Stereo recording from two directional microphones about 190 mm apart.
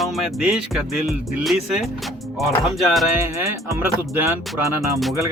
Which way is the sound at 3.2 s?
15° right (ahead or behind).